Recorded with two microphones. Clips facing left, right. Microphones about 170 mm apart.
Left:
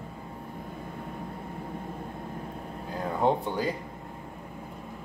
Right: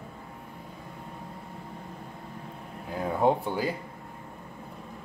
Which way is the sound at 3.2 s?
5° right (ahead or behind).